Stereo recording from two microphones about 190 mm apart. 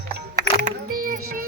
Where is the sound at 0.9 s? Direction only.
50° right (ahead or behind).